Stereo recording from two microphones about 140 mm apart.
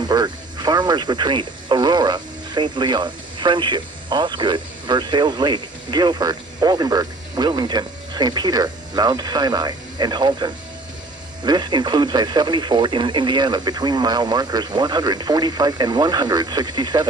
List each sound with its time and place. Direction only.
0.0 s speech: 30° right (ahead or behind)